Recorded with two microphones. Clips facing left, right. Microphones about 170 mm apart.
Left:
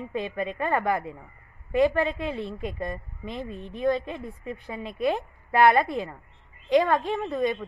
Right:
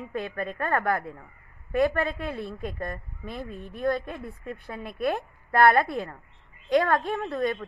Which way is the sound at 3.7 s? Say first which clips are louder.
Left 2 dB; 20° left (ahead or behind).